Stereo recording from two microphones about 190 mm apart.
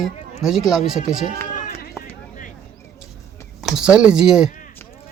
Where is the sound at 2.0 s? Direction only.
Centre (ahead or behind).